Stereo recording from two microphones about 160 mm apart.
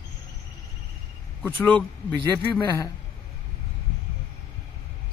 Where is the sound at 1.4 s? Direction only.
10° left (ahead or behind).